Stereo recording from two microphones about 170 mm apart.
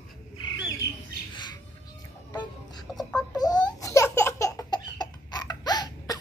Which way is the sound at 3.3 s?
25° left (ahead or behind).